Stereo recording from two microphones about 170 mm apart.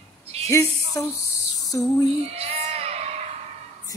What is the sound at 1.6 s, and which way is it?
Female singing, 20° left (ahead or behind).